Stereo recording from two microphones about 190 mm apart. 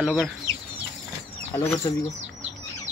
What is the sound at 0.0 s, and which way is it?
Speech, 5° right (ahead or behind).